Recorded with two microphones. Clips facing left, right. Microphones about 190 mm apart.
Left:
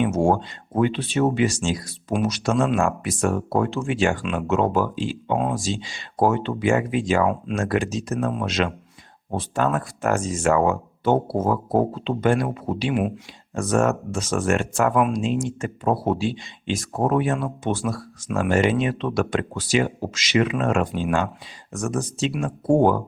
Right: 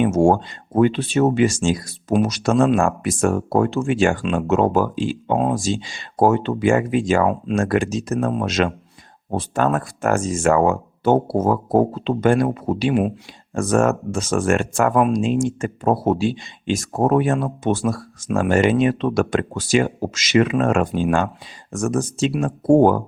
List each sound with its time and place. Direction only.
0.0 s speech: 45° right (ahead or behind)
13.5 s speech: 50° right (ahead or behind)
14.9 s speech: 40° right (ahead or behind)